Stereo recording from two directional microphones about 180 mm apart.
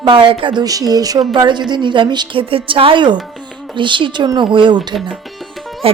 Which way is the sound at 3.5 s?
Centre (ahead or behind).